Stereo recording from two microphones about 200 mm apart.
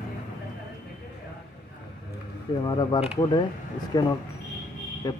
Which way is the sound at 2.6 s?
20° left (ahead or behind).